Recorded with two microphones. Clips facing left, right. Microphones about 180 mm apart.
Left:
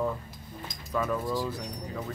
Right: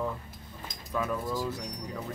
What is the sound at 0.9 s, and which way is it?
Speech, 5° right (ahead or behind).